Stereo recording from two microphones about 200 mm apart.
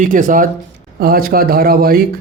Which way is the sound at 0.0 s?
40° right (ahead or behind).